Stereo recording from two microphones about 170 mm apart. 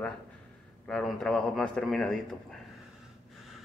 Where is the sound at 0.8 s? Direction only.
5° left (ahead or behind).